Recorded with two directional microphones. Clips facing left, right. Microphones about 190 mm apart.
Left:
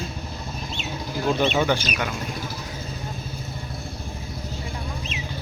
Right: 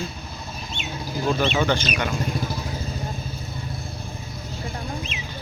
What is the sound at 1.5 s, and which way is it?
Speech, 10° left (ahead or behind).